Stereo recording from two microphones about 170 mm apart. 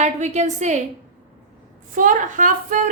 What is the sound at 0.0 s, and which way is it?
Speech, 45° right (ahead or behind).